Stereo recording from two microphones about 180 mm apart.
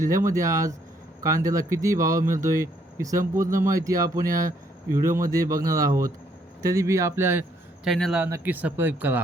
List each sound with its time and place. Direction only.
0.0 s speech: 15° right (ahead or behind)
7.9 s speech: centre (ahead or behind)
8.2 s speech: 10° right (ahead or behind)